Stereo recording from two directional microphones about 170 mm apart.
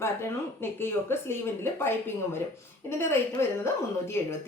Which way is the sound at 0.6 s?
15° left (ahead or behind).